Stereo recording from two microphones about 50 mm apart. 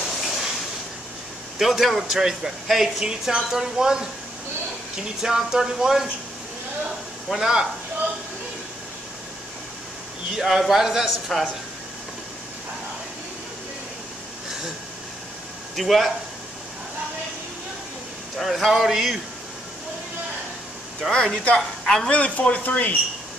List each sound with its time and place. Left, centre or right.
0.0 s a sound: centre
1.6 s speech: centre
5.2 s speech: centre
7.2 s speech: centre
10.3 s speech: centre
15.7 s speech: centre
18.4 s speech: centre
21.1 s a woman's voice: centre
22.1 s speech: left